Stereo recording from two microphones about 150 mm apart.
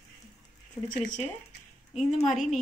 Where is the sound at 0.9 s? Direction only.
55° left (ahead or behind).